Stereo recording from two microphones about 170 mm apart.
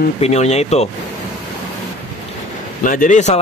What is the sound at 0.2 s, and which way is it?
Speech, 40° left (ahead or behind).